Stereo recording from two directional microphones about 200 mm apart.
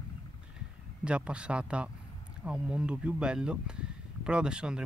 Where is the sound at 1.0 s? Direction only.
5° right (ahead or behind).